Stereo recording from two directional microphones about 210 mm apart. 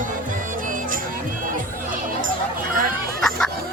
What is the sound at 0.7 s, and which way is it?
Music, 40° right (ahead or behind).